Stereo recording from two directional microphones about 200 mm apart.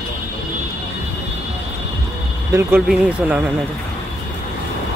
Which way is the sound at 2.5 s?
10° right (ahead or behind).